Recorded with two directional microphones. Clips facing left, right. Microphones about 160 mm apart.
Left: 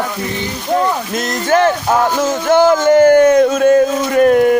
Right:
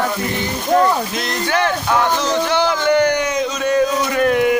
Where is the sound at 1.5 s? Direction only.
45° left (ahead or behind).